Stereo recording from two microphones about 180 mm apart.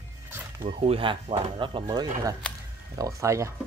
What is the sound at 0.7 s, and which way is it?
Speech, 30° right (ahead or behind).